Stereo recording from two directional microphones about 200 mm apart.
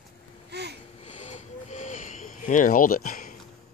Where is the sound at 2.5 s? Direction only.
40° left (ahead or behind).